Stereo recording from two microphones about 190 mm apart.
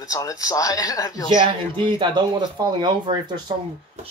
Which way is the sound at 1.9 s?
25° right (ahead or behind).